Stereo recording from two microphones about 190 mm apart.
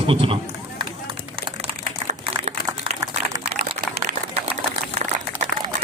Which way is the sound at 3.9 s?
30° right (ahead or behind).